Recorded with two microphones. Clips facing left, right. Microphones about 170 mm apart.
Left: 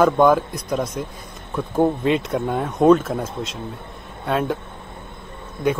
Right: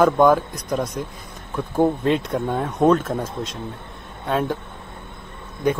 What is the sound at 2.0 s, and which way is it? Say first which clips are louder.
A man's voice: left 1 dB; 5° left (ahead or behind).